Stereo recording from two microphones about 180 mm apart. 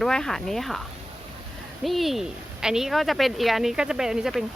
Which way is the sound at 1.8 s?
Centre (ahead or behind).